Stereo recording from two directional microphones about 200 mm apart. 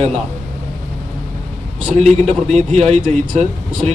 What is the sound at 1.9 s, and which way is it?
A man's voice, 35° right (ahead or behind).